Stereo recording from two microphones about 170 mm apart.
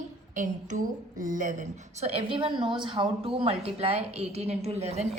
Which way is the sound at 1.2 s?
50° right (ahead or behind).